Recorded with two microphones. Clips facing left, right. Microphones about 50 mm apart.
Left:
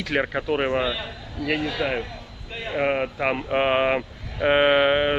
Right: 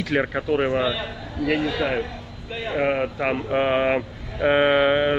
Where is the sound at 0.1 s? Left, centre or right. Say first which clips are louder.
Right 1 dB; centre.